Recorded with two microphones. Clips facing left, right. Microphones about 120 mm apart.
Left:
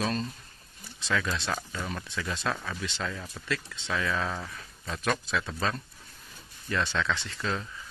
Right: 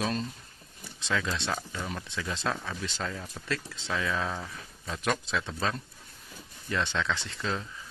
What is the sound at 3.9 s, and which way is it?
Speech, 15° right (ahead or behind).